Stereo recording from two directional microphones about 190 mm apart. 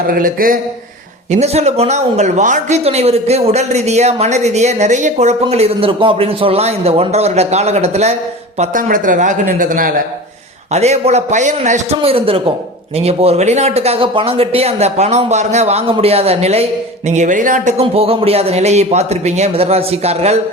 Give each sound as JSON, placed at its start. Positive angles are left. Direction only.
{"t": 0.1, "sound": "speech", "side_deg": -50}
{"t": 1.3, "sound": "speech", "side_deg": -35}
{"t": 10.7, "sound": "speech", "side_deg": -35}